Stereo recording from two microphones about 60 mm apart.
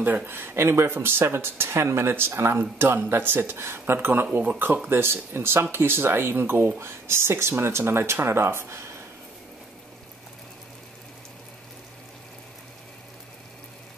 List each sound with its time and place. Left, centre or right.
0.3 s speech: right